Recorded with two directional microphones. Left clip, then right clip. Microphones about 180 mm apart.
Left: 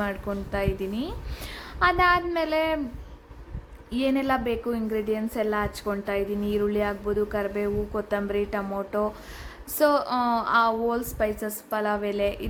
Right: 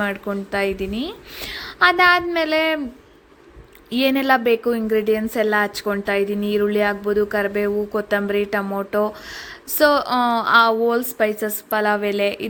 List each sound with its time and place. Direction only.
0.0 s a woman's voice: 25° right (ahead or behind)
3.8 s a woman's voice: 25° right (ahead or behind)